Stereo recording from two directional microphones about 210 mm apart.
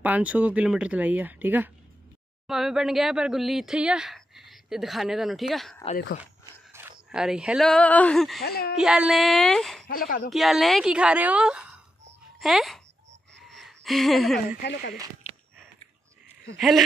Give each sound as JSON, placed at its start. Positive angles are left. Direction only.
{"t": 0.0, "sound": "speech", "side_deg": -5}
{"t": 7.1, "sound": "speech", "side_deg": -5}
{"t": 8.4, "sound": "speech", "side_deg": 50}
{"t": 8.7, "sound": "speech", "side_deg": -5}
{"t": 9.8, "sound": "speech", "side_deg": 40}
{"t": 10.3, "sound": "speech", "side_deg": 0}
{"t": 14.6, "sound": "speech", "side_deg": 50}
{"t": 15.2, "sound": "a sound", "side_deg": 30}
{"t": 16.5, "sound": "speech", "side_deg": 0}